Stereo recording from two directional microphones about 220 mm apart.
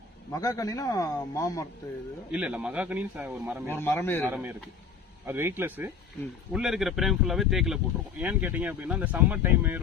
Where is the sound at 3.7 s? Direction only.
10° left (ahead or behind).